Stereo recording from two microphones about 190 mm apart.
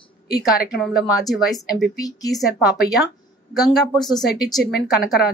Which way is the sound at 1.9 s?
20° left (ahead or behind).